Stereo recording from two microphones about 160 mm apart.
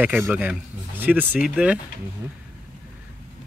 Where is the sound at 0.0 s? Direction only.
10° right (ahead or behind).